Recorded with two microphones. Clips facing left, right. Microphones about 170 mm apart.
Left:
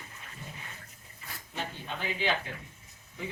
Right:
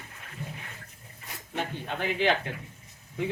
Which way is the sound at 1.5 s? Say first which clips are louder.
Right 5 dB; 55° right (ahead or behind).